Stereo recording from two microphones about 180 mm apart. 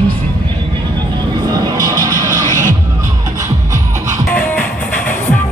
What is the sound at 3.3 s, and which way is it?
Music, 20° right (ahead or behind).